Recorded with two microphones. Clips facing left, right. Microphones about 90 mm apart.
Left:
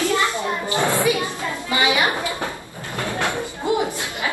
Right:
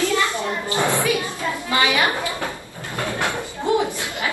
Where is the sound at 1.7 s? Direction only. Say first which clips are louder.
Even; 20° left (ahead or behind).